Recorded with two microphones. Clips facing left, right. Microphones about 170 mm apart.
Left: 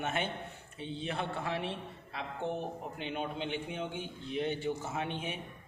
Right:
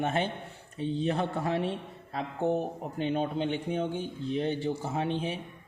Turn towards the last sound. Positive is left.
turn(degrees=-30)  # may be behind; listen again after turning